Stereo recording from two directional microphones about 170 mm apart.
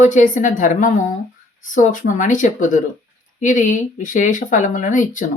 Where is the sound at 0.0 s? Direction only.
50° left (ahead or behind).